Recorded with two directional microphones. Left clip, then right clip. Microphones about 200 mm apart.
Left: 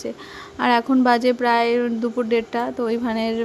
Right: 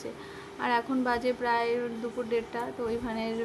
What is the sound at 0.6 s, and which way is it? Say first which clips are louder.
Speech: left 10 dB; 40° left (ahead or behind).